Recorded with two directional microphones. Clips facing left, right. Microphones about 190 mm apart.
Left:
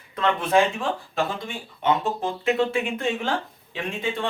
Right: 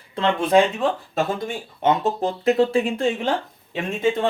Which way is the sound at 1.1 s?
45° right (ahead or behind).